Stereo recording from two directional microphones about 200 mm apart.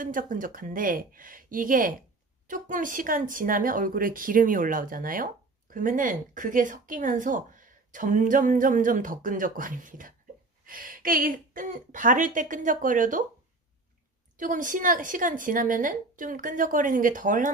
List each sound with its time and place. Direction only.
0.0 s a woman's voice: 45° right (ahead or behind)
14.3 s a woman's voice: 40° right (ahead or behind)